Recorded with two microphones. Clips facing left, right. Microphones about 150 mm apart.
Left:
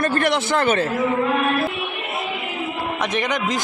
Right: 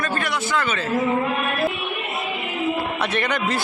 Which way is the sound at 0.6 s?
55° left (ahead or behind).